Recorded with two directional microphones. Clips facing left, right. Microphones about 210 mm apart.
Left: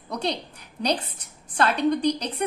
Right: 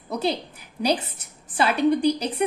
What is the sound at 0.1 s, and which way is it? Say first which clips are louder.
A woman's voice: right 3 dB; 5° right (ahead or behind).